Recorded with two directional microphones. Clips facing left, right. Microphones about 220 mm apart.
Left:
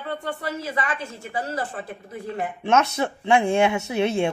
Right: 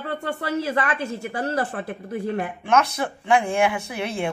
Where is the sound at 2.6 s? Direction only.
25° left (ahead or behind).